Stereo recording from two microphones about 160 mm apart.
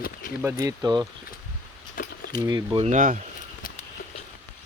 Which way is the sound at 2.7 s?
45° right (ahead or behind).